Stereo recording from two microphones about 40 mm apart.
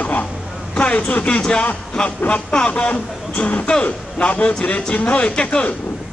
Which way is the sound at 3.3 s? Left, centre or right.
Left.